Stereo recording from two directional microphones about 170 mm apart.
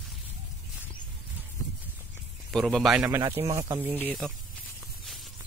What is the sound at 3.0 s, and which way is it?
Speech, 15° right (ahead or behind).